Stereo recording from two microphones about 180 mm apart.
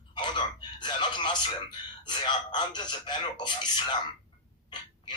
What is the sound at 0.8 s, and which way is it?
Speech, 25° left (ahead or behind).